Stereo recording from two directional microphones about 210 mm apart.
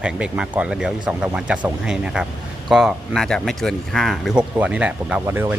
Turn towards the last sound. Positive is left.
turn(degrees=-10)  # may be behind; listen again after turning